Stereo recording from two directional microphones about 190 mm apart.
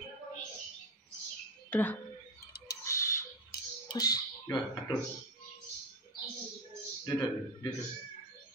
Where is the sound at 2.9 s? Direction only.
15° left (ahead or behind).